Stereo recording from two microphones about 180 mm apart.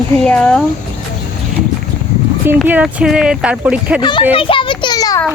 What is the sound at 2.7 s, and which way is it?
Speech, 10° right (ahead or behind).